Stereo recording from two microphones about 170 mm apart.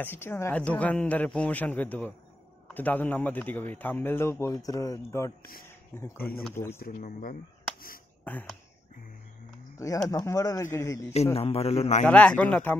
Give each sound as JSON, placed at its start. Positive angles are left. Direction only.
{"t": 0.0, "sound": "a man's voice", "side_deg": 10}
{"t": 6.8, "sound": "speech", "side_deg": 55}
{"t": 8.2, "sound": "a sound", "side_deg": 10}
{"t": 10.0, "sound": "a man's voice", "side_deg": 20}
{"t": 11.3, "sound": "a man's voice", "side_deg": 35}
{"t": 12.1, "sound": "a man's voice", "side_deg": 5}